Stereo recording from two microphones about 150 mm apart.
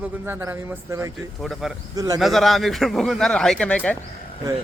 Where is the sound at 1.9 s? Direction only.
25° right (ahead or behind).